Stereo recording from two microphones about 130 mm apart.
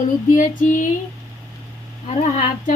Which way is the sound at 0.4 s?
85° left.